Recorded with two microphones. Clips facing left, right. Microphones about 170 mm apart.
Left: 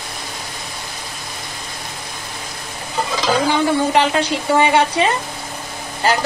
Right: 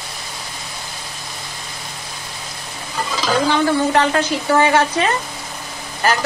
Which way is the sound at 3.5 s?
15° left (ahead or behind).